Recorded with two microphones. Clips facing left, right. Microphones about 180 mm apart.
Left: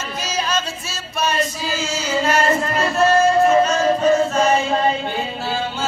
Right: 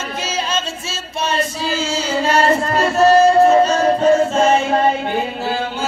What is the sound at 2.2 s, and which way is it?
Music, 35° right (ahead or behind).